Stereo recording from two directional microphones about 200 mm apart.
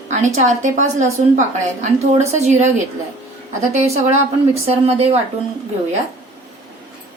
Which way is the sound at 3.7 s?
35° right (ahead or behind).